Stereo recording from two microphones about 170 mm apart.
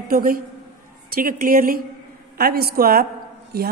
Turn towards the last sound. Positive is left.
turn(degrees=-65)  # may be behind; listen again after turning